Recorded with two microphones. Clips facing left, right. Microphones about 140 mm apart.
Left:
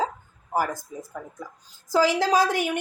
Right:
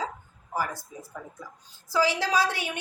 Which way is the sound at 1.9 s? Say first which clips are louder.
Left 4 dB; 45° left (ahead or behind).